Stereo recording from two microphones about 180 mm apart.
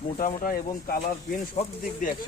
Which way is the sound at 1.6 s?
45° left (ahead or behind).